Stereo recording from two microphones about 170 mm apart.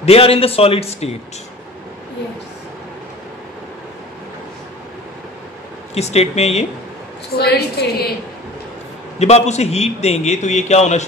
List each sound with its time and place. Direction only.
0.0 s a man's voice: 35° left (ahead or behind)
5.9 s a man's voice: 40° left (ahead or behind)
7.3 s a woman's voice: 65° left (ahead or behind)
9.2 s a man's voice: 40° left (ahead or behind)